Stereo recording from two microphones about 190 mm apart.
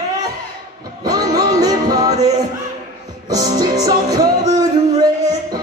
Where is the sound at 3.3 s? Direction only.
20° right (ahead or behind).